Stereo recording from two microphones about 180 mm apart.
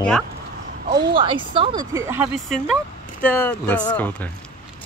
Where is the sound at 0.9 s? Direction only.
25° right (ahead or behind).